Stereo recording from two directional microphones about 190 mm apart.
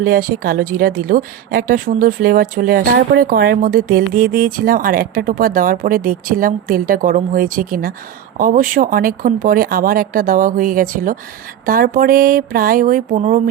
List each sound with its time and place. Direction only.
0.0 s speech: 50° right (ahead or behind)